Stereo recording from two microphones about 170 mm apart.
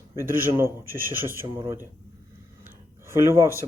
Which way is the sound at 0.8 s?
55° right (ahead or behind).